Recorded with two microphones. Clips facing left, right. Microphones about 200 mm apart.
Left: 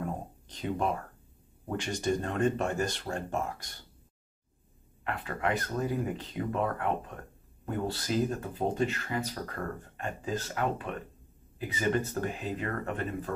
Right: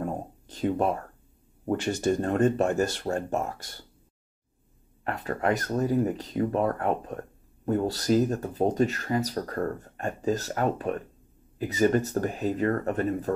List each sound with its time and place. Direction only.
0.0 s a sound: 45° right (ahead or behind)
1.7 s speech: 45° right (ahead or behind)
5.0 s speech: 40° right (ahead or behind)